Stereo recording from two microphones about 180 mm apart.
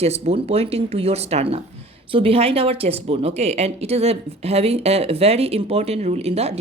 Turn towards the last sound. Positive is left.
turn(degrees=-35)  # may be behind; listen again after turning